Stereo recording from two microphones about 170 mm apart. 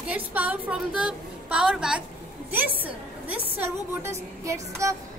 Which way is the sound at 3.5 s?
10° right (ahead or behind).